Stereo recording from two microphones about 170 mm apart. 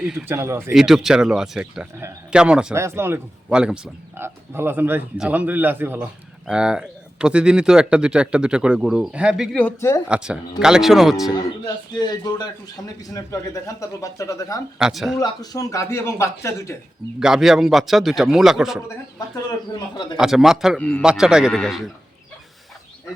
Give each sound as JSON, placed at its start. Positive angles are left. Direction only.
{"t": 0.0, "sound": "speech", "side_deg": -5}
{"t": 0.7, "sound": "speech", "side_deg": 0}
{"t": 2.7, "sound": "speech", "side_deg": -15}
{"t": 10.1, "sound": "speech", "side_deg": -5}
{"t": 11.6, "sound": "a man's voice", "side_deg": 25}
{"t": 14.8, "sound": "speech", "side_deg": -5}
{"t": 15.2, "sound": "speech", "side_deg": 20}
{"t": 17.2, "sound": "speech", "side_deg": -5}
{"t": 20.1, "sound": "speech", "side_deg": 0}
{"t": 21.0, "sound": "speech", "side_deg": -5}